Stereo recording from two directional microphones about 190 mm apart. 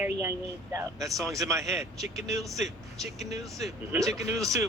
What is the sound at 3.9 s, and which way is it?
Speech, 15° right (ahead or behind).